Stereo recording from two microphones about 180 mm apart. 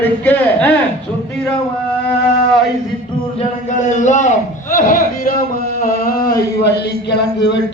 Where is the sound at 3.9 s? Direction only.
40° left (ahead or behind).